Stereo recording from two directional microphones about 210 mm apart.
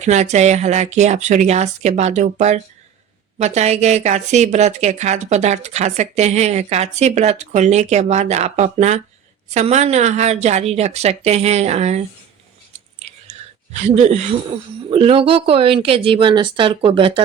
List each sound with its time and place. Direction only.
0.0 s speech: 35° right (ahead or behind)
13.7 s speech: 30° right (ahead or behind)